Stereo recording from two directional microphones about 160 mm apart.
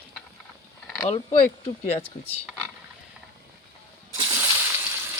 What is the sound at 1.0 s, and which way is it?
Speech, 40° left (ahead or behind).